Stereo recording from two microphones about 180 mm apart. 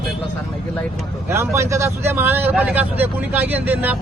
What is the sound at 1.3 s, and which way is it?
Speech, 15° right (ahead or behind).